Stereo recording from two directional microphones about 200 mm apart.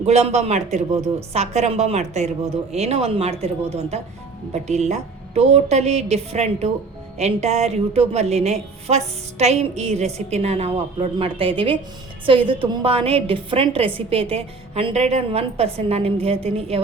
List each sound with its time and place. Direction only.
0.0 s a woman's voice: 35° right (ahead or behind)
0.9 s a woman's voice: 15° right (ahead or behind)
1.3 s a woman's voice: 30° right (ahead or behind)